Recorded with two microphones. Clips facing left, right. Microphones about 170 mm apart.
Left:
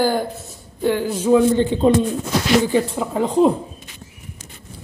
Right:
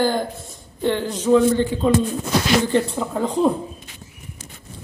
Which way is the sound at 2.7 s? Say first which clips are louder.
Left 1 dB; 10° left (ahead or behind).